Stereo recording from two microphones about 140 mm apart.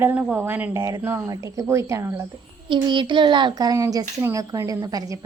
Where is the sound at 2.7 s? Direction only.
35° right (ahead or behind).